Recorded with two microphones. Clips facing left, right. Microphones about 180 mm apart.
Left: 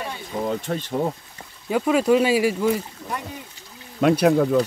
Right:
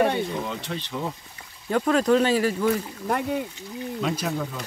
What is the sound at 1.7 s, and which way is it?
Speech, 10° left (ahead or behind).